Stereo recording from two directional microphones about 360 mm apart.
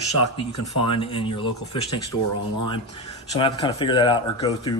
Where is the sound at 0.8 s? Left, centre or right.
Centre.